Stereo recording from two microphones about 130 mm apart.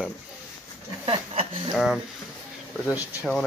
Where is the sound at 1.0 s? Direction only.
45° right (ahead or behind).